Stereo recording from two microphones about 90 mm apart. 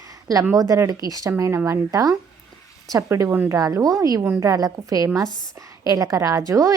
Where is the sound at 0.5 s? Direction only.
40° right (ahead or behind).